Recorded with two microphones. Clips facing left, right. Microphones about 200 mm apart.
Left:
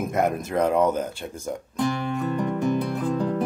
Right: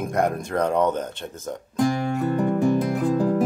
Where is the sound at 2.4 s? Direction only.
10° right (ahead or behind).